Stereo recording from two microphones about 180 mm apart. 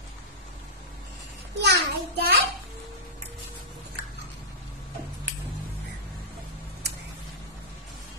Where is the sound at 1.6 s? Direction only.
70° right (ahead or behind).